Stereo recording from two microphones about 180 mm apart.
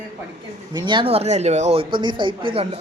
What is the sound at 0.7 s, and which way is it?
Speech, 25° right (ahead or behind).